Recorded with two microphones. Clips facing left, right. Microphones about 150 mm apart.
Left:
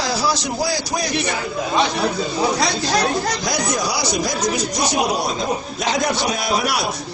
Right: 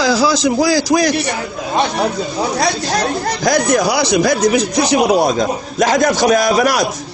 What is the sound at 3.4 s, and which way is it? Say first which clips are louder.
Speech: right 8 dB; 55° right (ahead or behind).